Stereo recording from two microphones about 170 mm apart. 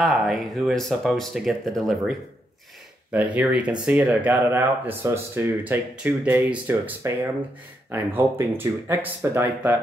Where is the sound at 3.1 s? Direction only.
10° right (ahead or behind).